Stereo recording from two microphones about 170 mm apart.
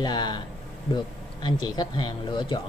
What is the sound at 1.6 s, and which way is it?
Speech, 25° left (ahead or behind).